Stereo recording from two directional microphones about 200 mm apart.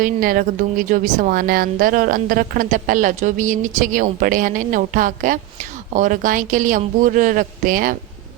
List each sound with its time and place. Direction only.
0.0 s a woman's voice: 45° right (ahead or behind)